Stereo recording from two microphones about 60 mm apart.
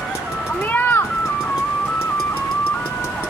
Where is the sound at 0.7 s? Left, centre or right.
Left.